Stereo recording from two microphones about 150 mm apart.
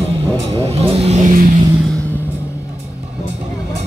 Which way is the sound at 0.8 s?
45° right (ahead or behind).